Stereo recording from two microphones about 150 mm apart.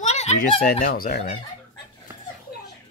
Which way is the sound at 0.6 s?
80° left.